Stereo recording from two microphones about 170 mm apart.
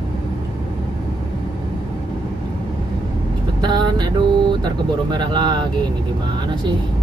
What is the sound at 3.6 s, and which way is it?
Vehicle, 25° right (ahead or behind).